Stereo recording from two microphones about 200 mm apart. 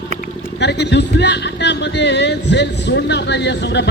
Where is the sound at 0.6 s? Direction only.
60° left (ahead or behind).